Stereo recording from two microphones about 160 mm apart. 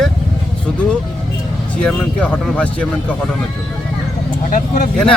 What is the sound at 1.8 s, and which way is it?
Speech, 5° left (ahead or behind).